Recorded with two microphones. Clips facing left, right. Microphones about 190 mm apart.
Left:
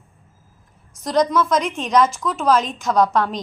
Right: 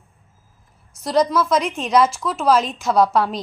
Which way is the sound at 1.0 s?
5° right (ahead or behind).